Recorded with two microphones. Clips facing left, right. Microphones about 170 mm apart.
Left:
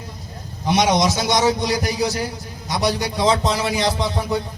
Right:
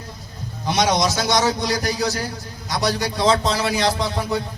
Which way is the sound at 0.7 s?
20° left (ahead or behind).